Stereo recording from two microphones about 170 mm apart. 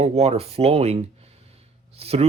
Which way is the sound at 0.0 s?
40° right (ahead or behind).